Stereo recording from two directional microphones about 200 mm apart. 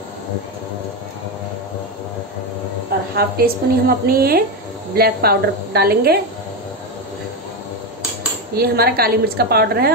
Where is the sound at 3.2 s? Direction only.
50° right (ahead or behind).